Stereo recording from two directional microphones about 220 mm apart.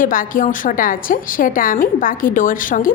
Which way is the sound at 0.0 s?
40° left (ahead or behind).